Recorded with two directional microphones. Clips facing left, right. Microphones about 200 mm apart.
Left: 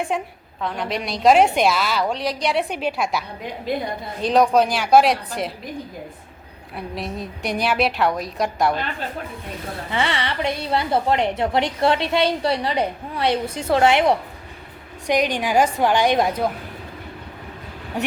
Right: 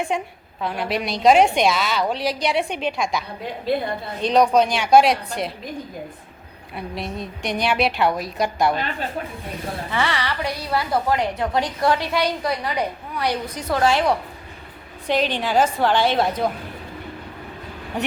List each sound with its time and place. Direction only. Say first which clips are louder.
0.1 s a woman's voice: even; centre (ahead or behind)
6.7 s a woman's voice: even; centre (ahead or behind)
9.9 s a woman's voice: left 1 dB; 20° left (ahead or behind)